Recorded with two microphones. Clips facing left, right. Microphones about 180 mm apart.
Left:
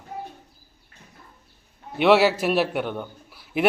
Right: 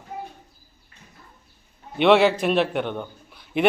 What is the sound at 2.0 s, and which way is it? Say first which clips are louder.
A man's voice: right 1 dB; 5° left (ahead or behind).